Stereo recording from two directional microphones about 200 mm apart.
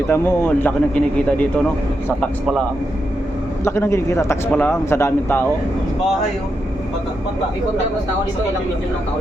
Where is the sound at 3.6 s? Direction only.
15° left (ahead or behind).